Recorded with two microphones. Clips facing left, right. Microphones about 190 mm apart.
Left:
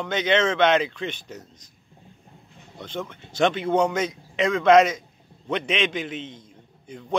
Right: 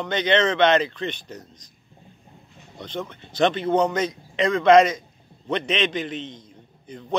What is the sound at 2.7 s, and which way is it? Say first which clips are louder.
A man's voice: right 1 dB; 5° left (ahead or behind).